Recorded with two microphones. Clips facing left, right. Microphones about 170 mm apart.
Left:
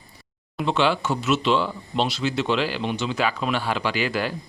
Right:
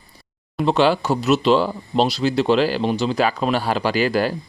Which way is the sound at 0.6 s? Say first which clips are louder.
Right 5 dB; 40° right (ahead or behind).